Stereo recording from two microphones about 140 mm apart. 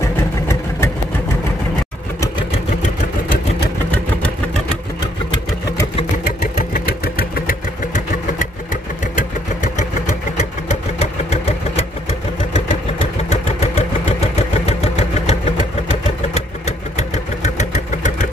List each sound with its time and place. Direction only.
0.0 s vehicle: 20° left (ahead or behind)
6.4 s vehicle: 80° left
9.1 s vehicle: 65° left (ahead or behind)
13.3 s engine: 50° left (ahead or behind)